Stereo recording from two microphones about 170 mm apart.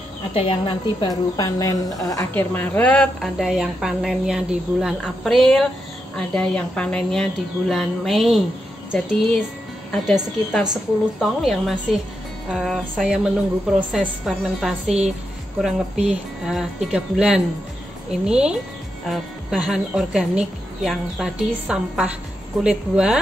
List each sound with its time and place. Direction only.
0.3 s a woman's voice: 35° left (ahead or behind)
2.3 s a woman's voice: 10° left (ahead or behind)
10.0 s a woman's voice: centre (ahead or behind)